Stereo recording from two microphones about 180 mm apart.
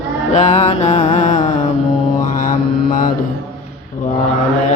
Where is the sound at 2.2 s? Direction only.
50° left (ahead or behind).